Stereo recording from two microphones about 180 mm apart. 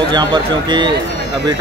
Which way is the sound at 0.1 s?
25° right (ahead or behind).